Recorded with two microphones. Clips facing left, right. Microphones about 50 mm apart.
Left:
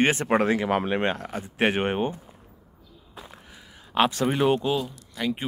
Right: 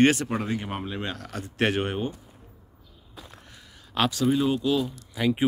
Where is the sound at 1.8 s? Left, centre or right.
Left.